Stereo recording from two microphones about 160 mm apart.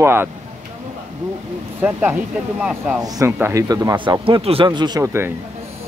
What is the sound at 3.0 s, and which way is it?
Speech, 20° right (ahead or behind).